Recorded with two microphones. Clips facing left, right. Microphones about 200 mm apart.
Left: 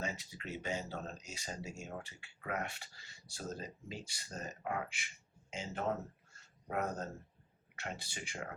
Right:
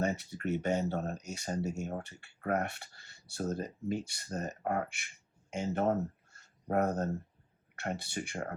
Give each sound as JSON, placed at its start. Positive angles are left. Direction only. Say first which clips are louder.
{"t": 0.0, "sound": "speech", "louder": "right 9 dB", "side_deg": -60}
{"t": 6.7, "sound": "speech", "louder": "right 8 dB", "side_deg": -60}